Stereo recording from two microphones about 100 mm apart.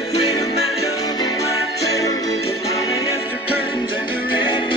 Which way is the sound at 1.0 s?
40° left (ahead or behind).